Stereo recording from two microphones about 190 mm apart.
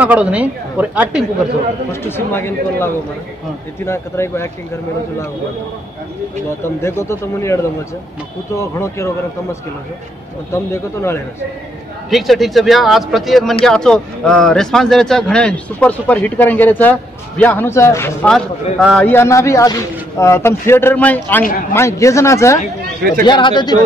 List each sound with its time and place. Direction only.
0.0 s a woman's voice: 10° right (ahead or behind)
1.9 s a man's voice: 10° left (ahead or behind)
6.8 s a man's voice: 15° left (ahead or behind)
12.1 s a man's voice: centre (ahead or behind)
18.3 s a man's voice: 5° left (ahead or behind); by 23.8 s 25° left (ahead or behind)